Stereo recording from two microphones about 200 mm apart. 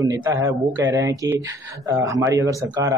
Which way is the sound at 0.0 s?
15° right (ahead or behind).